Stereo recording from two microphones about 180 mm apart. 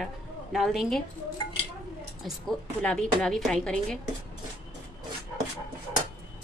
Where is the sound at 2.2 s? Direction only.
5° left (ahead or behind).